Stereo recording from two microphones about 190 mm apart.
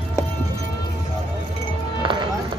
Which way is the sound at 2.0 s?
25° right (ahead or behind).